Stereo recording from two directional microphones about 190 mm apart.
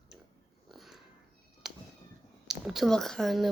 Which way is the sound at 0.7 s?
Centre (ahead or behind).